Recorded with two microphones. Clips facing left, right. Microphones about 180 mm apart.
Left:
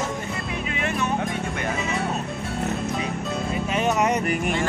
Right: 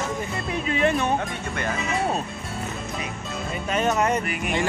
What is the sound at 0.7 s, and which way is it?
Music, 35° right (ahead or behind).